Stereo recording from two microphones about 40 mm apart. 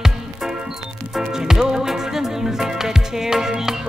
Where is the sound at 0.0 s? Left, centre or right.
Centre.